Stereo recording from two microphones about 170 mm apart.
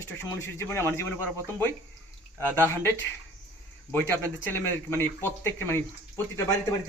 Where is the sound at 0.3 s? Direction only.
15° left (ahead or behind).